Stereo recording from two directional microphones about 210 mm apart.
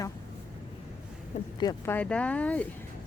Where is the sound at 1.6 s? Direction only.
20° left (ahead or behind).